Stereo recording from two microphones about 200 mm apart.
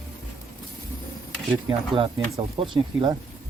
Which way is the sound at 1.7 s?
25° right (ahead or behind).